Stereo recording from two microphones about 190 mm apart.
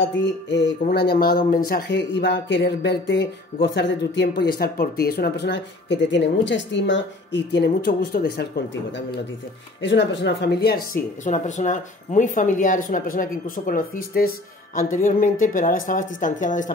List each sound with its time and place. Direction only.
0.0 s a sound: 65° left (ahead or behind)
0.8 s speech: 55° left (ahead or behind)
9.8 s speech: 70° left (ahead or behind); by 16.7 s 40° left (ahead or behind)